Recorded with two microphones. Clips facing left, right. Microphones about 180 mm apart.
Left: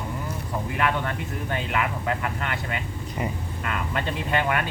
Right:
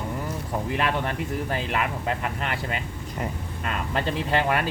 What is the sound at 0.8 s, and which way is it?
Speech, 30° right (ahead or behind).